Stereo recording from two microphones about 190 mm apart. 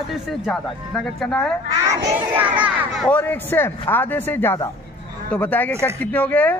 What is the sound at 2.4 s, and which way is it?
Speech, 10° right (ahead or behind).